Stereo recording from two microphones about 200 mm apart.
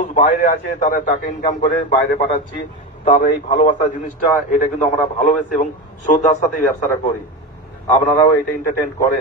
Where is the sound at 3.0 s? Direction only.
40° left (ahead or behind).